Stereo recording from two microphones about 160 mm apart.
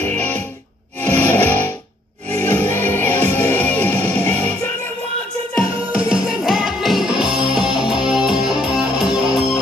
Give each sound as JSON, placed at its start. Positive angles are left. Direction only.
{"t": 0.0, "sound": "music", "side_deg": 10}
{"t": 5.6, "sound": "music", "side_deg": -5}